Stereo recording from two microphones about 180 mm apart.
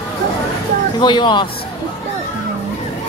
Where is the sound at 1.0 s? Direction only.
25° left (ahead or behind).